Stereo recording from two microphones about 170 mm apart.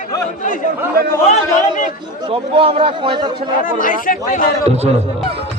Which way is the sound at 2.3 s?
30° right (ahead or behind).